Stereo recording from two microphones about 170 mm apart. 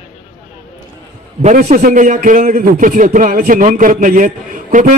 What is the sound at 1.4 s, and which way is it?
A man's voice, 55° right (ahead or behind).